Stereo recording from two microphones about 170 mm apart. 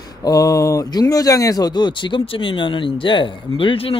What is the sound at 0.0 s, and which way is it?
Speech, 25° left (ahead or behind).